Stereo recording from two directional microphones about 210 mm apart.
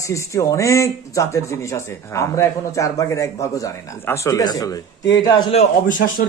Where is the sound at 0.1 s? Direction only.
15° left (ahead or behind).